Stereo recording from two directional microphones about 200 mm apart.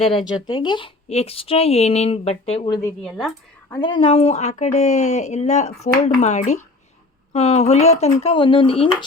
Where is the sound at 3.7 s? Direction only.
25° left (ahead or behind).